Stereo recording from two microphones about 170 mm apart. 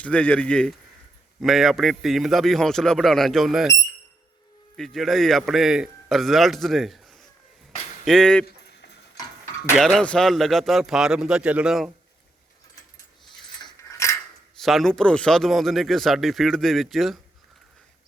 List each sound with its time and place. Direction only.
0.0 s speech: 10° left (ahead or behind)
4.8 s speech: centre (ahead or behind)
9.1 s a sound: 20° left (ahead or behind)
9.7 s speech: centre (ahead or behind)
13.6 s a sound: 20° left (ahead or behind)
14.6 s speech: centre (ahead or behind)